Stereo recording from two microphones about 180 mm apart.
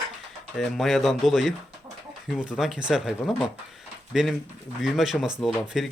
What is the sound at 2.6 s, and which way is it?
Speech, 5° right (ahead or behind).